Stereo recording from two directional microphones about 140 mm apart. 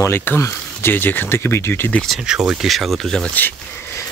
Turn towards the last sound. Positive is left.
turn(degrees=20)  # may be behind; listen again after turning